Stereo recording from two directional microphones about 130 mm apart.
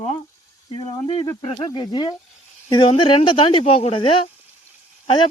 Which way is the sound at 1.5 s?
35° left (ahead or behind).